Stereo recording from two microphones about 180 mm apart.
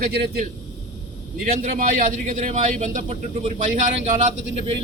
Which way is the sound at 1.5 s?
50° right (ahead or behind).